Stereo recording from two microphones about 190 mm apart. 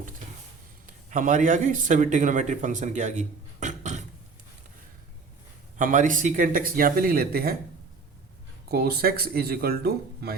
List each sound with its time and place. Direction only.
0.9 s speech: 45° right (ahead or behind)
5.7 s speech: 40° right (ahead or behind)
8.7 s speech: 55° right (ahead or behind)